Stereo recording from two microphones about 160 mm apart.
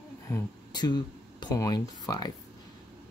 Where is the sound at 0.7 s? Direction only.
25° left (ahead or behind).